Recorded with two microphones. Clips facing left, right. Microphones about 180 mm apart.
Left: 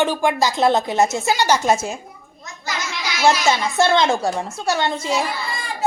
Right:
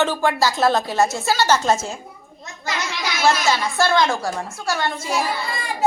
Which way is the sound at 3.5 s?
20° left (ahead or behind).